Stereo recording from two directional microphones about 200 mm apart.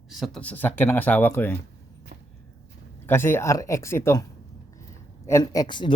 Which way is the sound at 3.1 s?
10° left (ahead or behind).